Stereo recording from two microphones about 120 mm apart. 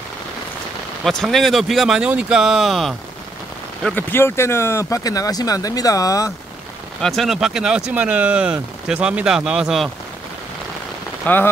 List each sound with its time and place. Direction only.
1.0 s speech: centre (ahead or behind)
3.9 s speech: 20° left (ahead or behind)
7.0 s speech: centre (ahead or behind)
11.3 s speech: 15° left (ahead or behind)